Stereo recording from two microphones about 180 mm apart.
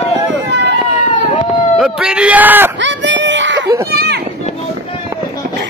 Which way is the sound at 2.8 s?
90° right.